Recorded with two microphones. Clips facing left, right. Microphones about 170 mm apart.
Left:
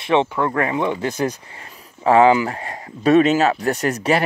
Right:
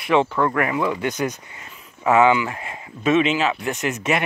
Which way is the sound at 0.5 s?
30° left (ahead or behind).